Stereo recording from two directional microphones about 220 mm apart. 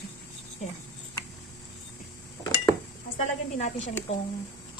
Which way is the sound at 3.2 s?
35° left (ahead or behind).